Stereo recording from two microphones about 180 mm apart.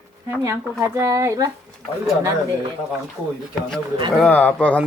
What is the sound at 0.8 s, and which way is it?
Speech, 15° right (ahead or behind).